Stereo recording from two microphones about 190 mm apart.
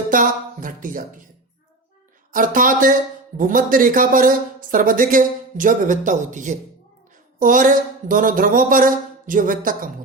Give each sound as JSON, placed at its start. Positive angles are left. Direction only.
{"t": 0.1, "sound": "speech", "side_deg": -45}
{"t": 2.3, "sound": "speech", "side_deg": -45}